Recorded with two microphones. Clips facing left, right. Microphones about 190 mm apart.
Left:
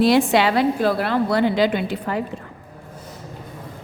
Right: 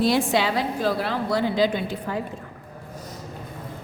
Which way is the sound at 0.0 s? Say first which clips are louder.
Left 5 dB; 70° left (ahead or behind).